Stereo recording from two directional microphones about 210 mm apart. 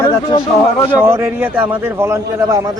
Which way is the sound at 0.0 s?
20° left (ahead or behind).